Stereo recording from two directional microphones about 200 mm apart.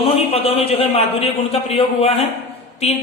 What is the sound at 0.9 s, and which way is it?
A man's voice, 30° left (ahead or behind).